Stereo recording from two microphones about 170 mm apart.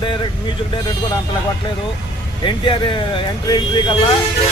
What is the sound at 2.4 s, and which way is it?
Speech, 30° left (ahead or behind).